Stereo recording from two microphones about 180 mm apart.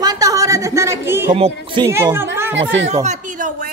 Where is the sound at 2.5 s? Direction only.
90° right.